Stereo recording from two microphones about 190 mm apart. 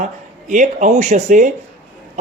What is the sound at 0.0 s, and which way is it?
A man's voice, 40° right (ahead or behind).